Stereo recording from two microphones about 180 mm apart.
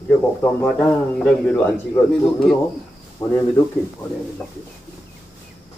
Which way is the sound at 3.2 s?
20° left (ahead or behind).